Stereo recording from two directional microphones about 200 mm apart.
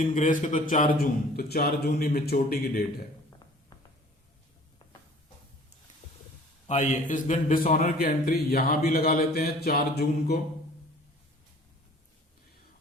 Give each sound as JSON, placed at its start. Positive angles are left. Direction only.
{"t": 0.0, "sound": "a man's voice", "side_deg": 40}
{"t": 6.7, "sound": "a man's voice", "side_deg": 35}